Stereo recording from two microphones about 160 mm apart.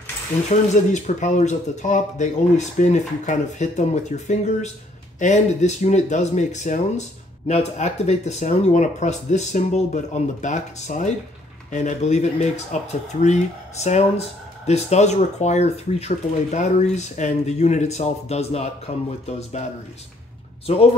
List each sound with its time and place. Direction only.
0.5 s speech: 50° left (ahead or behind)
20.6 s a man's voice: 40° left (ahead or behind)